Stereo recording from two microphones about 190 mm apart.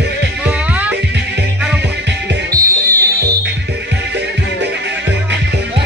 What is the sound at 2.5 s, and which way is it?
Music, 20° right (ahead or behind).